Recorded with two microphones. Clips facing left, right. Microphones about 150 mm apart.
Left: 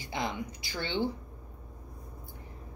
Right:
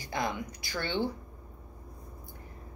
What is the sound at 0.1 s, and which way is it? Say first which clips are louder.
Speech: right 1 dB; 20° left (ahead or behind).